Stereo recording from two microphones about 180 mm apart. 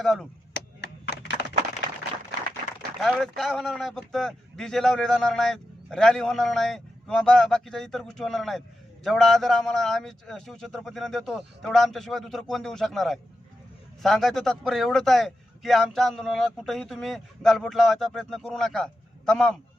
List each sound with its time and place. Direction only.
0.0 s a man's voice: centre (ahead or behind)
0.5 s a sound: 70° left (ahead or behind)
3.0 s a man's voice: centre (ahead or behind)